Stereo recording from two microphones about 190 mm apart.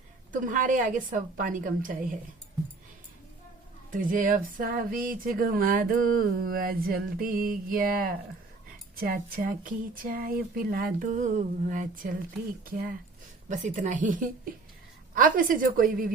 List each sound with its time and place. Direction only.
0.3 s speech: 45° right (ahead or behind)
3.9 s speech: 45° right (ahead or behind)
13.5 s a woman's voice: 40° right (ahead or behind)